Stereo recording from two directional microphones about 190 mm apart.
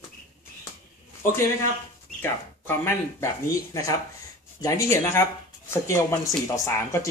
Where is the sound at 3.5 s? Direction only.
15° left (ahead or behind).